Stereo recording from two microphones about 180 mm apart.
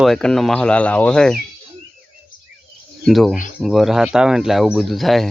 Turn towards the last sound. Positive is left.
turn(degrees=0)  # may be behind; listen again after turning